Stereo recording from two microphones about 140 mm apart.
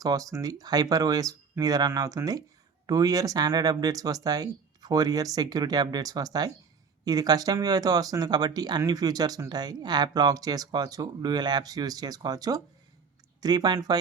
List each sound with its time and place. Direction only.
0.0 s speech: 25° right (ahead or behind)